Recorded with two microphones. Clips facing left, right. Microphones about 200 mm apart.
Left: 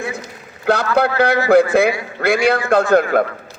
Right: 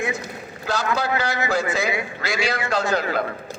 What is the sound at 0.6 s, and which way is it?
A man's voice, 60° left (ahead or behind).